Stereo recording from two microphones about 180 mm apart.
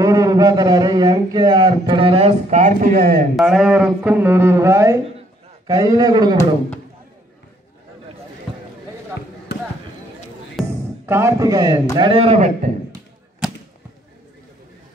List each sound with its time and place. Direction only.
0.0 s a sound: 20° right (ahead or behind); by 3.3 s 55° right (ahead or behind)
3.3 s a man's voice: centre (ahead or behind); by 6.3 s 20° right (ahead or behind)
9.5 s basketball bounce: 65° left (ahead or behind)
10.6 s music: centre (ahead or behind)
11.1 s a man's voice: 15° right (ahead or behind)
12.0 s a man's voice: 30° right (ahead or behind)